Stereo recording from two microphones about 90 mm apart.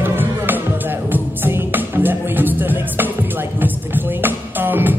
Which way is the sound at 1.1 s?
20° right (ahead or behind).